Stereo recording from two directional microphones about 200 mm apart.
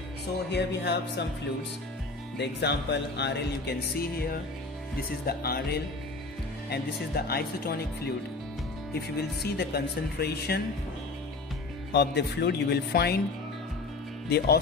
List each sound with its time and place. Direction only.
0.5 s speech: 60° left (ahead or behind)
2.3 s speech: 55° left (ahead or behind)
9.4 s speech: 55° left (ahead or behind)
11.9 s speech: 55° left (ahead or behind)
14.3 s speech: 50° left (ahead or behind)